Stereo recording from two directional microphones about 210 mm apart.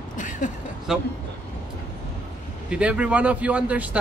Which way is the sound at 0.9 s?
5° right (ahead or behind).